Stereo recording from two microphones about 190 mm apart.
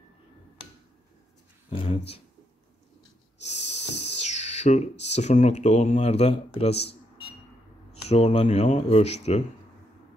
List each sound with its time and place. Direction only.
1.7 s speech: 30° left (ahead or behind)
3.4 s snort: 35° left (ahead or behind)
4.2 s a sound: 35° left (ahead or behind)
5.1 s speech: 35° left (ahead or behind)
7.9 s speech: 30° left (ahead or behind)